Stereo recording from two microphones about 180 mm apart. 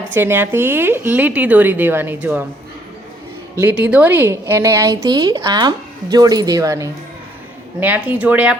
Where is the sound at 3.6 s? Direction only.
10° right (ahead or behind).